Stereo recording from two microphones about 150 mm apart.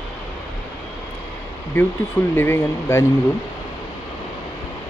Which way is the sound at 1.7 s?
10° left (ahead or behind).